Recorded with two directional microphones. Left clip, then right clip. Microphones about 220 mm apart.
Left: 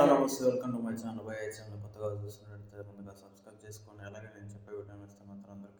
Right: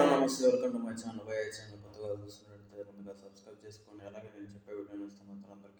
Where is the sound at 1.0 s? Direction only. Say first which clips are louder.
Right 2 dB; 20° left (ahead or behind).